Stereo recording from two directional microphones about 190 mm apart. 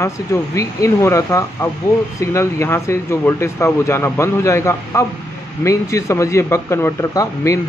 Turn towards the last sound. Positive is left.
turn(degrees=15)  # may be behind; listen again after turning